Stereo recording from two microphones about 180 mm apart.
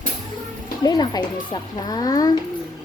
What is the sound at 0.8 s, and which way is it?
A child's voice, 20° left (ahead or behind).